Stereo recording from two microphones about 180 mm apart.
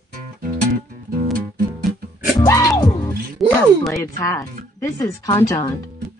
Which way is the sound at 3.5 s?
15° left (ahead or behind).